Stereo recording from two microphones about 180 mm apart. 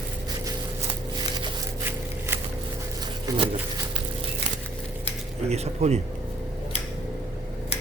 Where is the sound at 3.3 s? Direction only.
20° right (ahead or behind).